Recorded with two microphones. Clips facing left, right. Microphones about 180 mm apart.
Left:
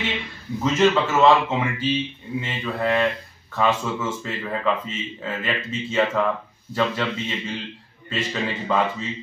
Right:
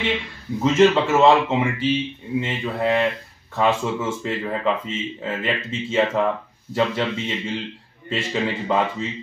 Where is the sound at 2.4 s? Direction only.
25° right (ahead or behind).